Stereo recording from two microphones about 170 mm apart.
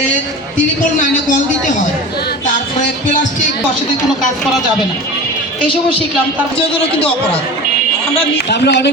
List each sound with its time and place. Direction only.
0.9 s speech: 50° left (ahead or behind)
8.4 s a man's voice: 80° left